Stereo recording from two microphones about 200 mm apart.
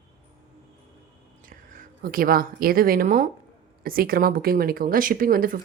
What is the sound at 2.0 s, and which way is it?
A woman's voice, 45° right (ahead or behind).